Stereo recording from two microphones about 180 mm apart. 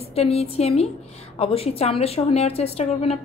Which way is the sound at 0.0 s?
35° left (ahead or behind).